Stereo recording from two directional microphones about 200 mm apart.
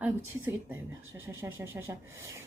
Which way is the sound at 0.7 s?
10° right (ahead or behind).